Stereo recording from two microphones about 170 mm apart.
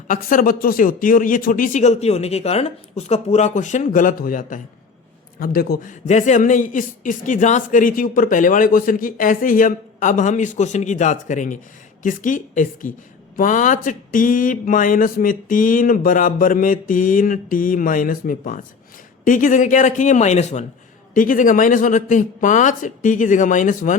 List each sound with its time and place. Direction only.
0.1 s a man's voice: 55° left (ahead or behind)
5.4 s a man's voice: 60° left (ahead or behind)